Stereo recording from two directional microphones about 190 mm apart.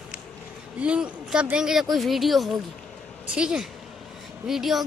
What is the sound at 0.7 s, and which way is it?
A woman's voice, 5° right (ahead or behind).